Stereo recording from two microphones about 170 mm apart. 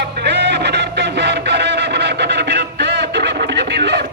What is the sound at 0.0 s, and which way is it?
Music, 85° right.